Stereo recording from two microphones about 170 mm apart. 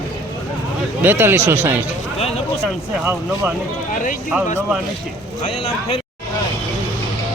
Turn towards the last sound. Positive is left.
turn(degrees=35)  # may be behind; listen again after turning